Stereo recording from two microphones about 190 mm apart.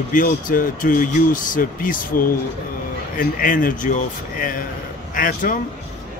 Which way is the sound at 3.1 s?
45° left (ahead or behind).